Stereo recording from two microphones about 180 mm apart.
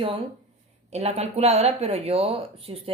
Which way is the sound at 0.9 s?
35° right (ahead or behind).